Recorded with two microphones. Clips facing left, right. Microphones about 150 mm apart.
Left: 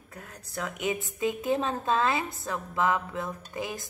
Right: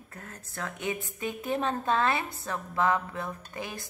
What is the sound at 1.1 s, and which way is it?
Dishes, 20° left (ahead or behind).